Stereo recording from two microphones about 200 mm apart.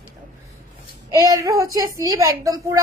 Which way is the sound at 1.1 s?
15° right (ahead or behind).